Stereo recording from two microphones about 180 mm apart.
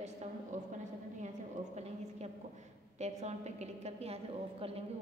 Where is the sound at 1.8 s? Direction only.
40° right (ahead or behind).